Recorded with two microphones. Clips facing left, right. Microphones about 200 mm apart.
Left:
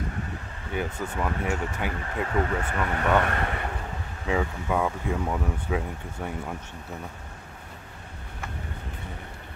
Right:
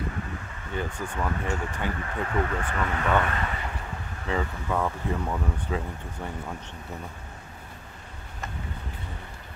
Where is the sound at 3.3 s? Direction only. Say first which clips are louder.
Left 2 dB; 60° left (ahead or behind).